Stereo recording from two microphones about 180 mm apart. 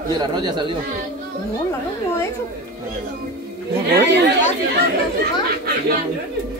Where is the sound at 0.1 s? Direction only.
25° right (ahead or behind).